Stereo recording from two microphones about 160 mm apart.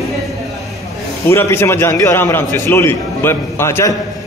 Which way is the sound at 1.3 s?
15° left (ahead or behind).